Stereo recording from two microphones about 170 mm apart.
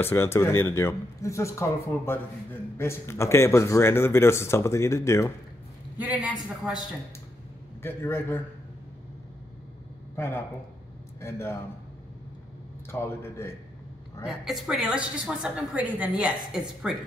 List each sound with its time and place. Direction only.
0.0 s speech: 15° left (ahead or behind)
5.9 s a woman's voice: 10° right (ahead or behind)
7.8 s speech: 15° left (ahead or behind)
10.1 s a man's voice: 15° left (ahead or behind)
12.9 s speech: 15° left (ahead or behind)
14.2 s a woman's voice: 5° right (ahead or behind)